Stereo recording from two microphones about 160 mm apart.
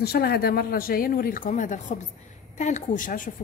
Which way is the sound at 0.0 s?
80° left.